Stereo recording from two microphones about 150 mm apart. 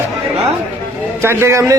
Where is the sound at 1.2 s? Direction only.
20° right (ahead or behind).